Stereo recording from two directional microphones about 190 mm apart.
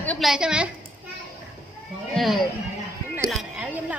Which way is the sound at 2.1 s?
Centre (ahead or behind).